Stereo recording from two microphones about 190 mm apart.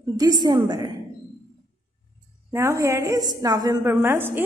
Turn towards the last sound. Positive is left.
turn(degrees=-10)  # may be behind; listen again after turning